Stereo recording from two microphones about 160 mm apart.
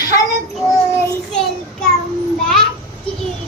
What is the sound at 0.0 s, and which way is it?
Child singing, 25° left (ahead or behind).